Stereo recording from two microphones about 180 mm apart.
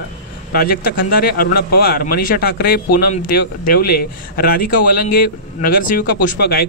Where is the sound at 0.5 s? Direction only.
55° left (ahead or behind).